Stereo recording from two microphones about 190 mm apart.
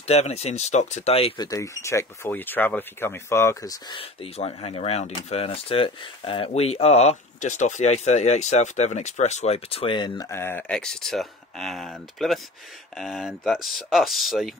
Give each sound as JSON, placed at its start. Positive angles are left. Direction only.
{"t": 0.0, "sound": "speech", "side_deg": 35}
{"t": 4.0, "sound": "speech", "side_deg": 30}